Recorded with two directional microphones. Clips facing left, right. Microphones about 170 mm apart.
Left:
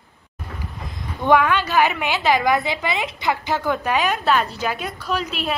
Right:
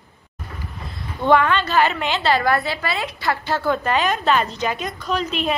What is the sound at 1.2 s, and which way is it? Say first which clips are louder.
A woman's voice: even; 10° left (ahead or behind).